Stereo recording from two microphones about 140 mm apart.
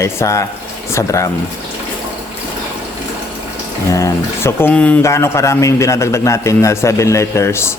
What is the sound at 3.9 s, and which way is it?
Speech, 20° left (ahead or behind).